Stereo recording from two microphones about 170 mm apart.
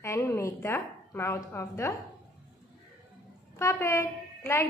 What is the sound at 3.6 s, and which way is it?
A woman's voice, 15° left (ahead or behind).